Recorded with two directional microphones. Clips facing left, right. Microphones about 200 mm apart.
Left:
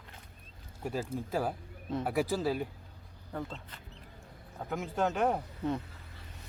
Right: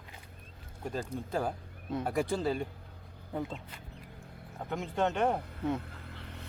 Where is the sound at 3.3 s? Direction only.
10° right (ahead or behind).